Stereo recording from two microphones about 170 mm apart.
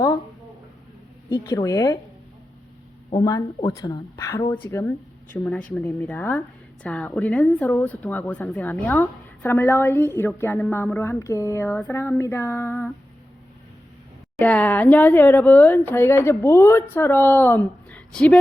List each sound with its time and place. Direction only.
1.5 s speech: 20° left (ahead or behind)
3.2 s a woman's voice: 20° left (ahead or behind)
14.3 s a woman's voice: 10° left (ahead or behind)